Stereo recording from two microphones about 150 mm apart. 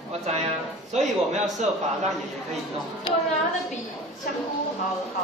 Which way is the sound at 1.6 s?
50° right (ahead or behind).